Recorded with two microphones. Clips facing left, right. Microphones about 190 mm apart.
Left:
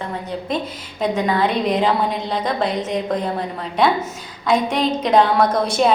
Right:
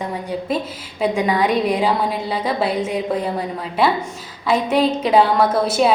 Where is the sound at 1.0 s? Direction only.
10° right (ahead or behind).